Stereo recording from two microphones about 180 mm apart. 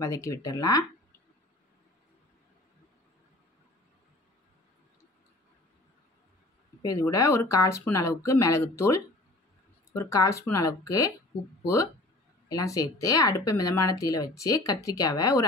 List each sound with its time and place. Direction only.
0.0 s speech: 15° left (ahead or behind)
6.8 s speech: 20° left (ahead or behind)
9.9 s speech: 15° left (ahead or behind)